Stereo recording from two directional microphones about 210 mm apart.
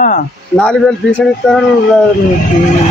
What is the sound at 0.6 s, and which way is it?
Speech, 5° left (ahead or behind).